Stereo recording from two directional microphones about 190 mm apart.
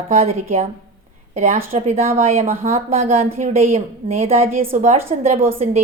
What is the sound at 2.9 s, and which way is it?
A woman's voice, 35° right (ahead or behind).